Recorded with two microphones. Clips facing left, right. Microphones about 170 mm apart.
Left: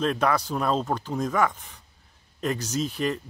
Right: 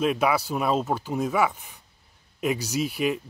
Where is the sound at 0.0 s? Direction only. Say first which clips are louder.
Right 1 dB; 10° right (ahead or behind).